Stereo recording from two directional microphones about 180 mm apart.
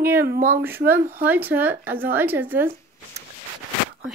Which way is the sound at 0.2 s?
55° right (ahead or behind).